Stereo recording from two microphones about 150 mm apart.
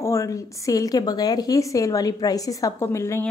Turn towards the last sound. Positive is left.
turn(degrees=20)  # may be behind; listen again after turning